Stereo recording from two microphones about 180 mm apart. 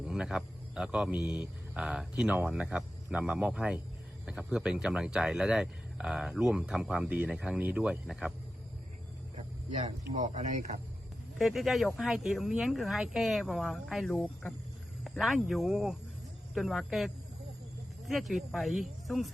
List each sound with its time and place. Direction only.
0.0 s speech: 5° right (ahead or behind)
9.3 s speech: 40° right (ahead or behind)
11.3 s speech: centre (ahead or behind)